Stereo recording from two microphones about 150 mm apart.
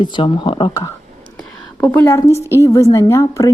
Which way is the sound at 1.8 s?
15° left (ahead or behind).